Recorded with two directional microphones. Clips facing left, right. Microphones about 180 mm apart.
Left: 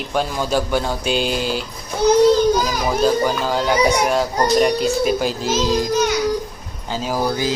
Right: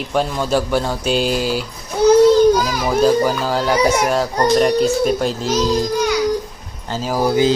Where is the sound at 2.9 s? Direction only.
5° right (ahead or behind).